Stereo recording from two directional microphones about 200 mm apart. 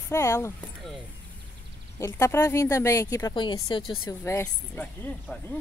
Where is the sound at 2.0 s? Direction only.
15° left (ahead or behind).